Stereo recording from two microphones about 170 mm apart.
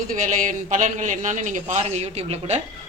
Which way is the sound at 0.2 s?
50° right (ahead or behind).